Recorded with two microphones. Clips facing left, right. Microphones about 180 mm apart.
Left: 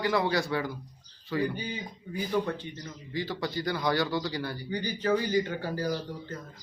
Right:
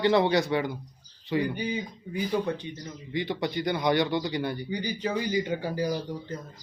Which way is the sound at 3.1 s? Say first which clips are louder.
Right 3 dB; 20° right (ahead or behind).